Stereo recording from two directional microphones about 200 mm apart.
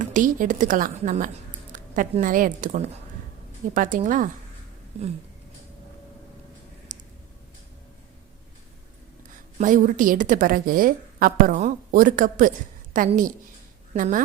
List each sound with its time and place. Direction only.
0.0 s a woman's voice: 40° right (ahead or behind)
6.9 s a sound: 40° right (ahead or behind)
9.6 s a woman's voice: 40° right (ahead or behind)